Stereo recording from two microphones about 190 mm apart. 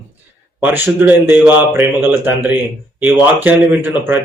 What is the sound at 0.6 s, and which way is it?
Speech, 10° right (ahead or behind).